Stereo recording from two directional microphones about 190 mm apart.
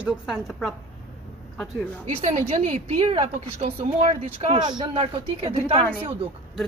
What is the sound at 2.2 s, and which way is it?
A woman's voice, 35° right (ahead or behind).